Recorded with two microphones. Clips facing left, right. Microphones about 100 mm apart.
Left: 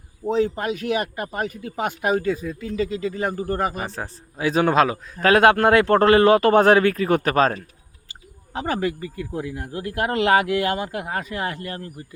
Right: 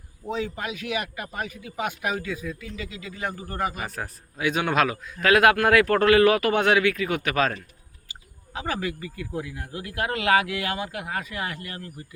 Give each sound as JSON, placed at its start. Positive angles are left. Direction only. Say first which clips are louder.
{"t": 0.3, "sound": "speech", "louder": "left 8 dB", "side_deg": 40}